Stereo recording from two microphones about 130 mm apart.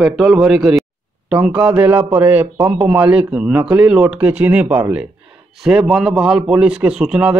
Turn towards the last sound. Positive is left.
turn(degrees=-5)  # may be behind; listen again after turning